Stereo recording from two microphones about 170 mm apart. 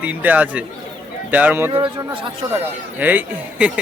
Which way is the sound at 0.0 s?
10° right (ahead or behind).